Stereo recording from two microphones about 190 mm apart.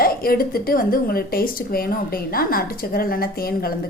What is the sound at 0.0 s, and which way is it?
Speech, 50° left (ahead or behind).